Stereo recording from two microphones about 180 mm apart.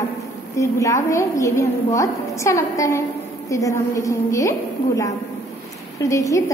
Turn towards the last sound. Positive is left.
turn(degrees=15)  # may be behind; listen again after turning